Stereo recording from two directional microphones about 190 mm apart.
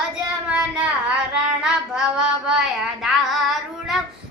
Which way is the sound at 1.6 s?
5° right (ahead or behind).